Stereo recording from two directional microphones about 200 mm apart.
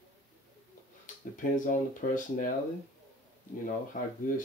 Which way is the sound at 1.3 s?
40° left (ahead or behind).